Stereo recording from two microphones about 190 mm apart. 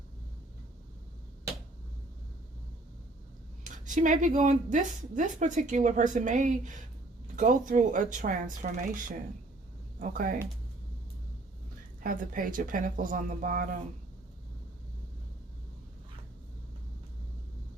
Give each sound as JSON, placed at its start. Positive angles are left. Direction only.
{"t": 3.6, "sound": "speech", "side_deg": -40}
{"t": 12.0, "sound": "speech", "side_deg": -45}